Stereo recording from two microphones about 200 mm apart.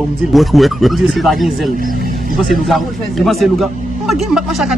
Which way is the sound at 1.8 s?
45° right (ahead or behind).